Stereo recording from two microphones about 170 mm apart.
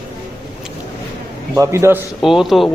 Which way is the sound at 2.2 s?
Centre (ahead or behind).